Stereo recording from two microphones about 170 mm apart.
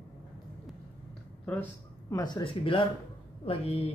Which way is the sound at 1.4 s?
10° left (ahead or behind).